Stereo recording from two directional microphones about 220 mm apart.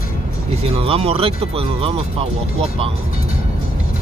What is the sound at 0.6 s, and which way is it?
Speech, 25° right (ahead or behind).